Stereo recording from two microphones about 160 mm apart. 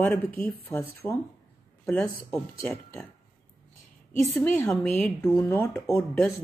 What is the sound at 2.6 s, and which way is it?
Speech, centre (ahead or behind).